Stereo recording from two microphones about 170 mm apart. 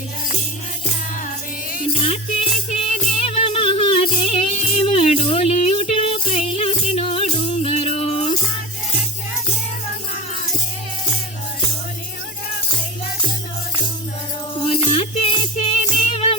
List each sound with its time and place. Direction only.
2.0 s music: 40° left (ahead or behind)
14.7 s music: 35° left (ahead or behind)